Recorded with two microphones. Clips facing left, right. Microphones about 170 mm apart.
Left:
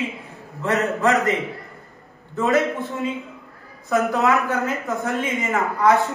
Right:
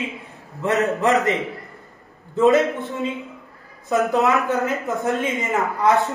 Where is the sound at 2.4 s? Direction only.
20° right (ahead or behind).